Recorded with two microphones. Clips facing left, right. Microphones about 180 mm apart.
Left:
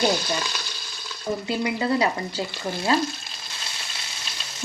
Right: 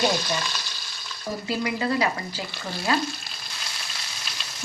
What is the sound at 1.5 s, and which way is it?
Frying, 25° left (ahead or behind).